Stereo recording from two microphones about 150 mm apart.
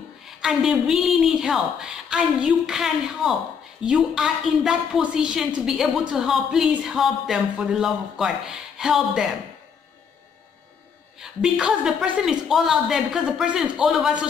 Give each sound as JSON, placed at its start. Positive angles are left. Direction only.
{"t": 0.4, "sound": "a woman's voice", "side_deg": -5}
{"t": 11.1, "sound": "a woman's voice", "side_deg": -5}